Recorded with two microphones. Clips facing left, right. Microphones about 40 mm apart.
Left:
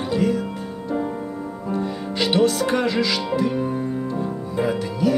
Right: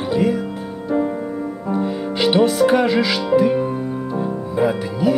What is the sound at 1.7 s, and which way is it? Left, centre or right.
Music, centre.